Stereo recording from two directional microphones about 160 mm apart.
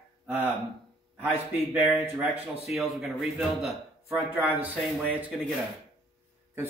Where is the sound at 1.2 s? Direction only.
10° right (ahead or behind).